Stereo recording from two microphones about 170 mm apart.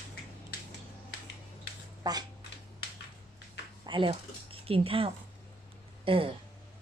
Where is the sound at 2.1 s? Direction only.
25° right (ahead or behind).